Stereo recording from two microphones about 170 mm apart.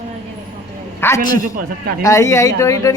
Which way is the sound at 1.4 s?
55° right (ahead or behind).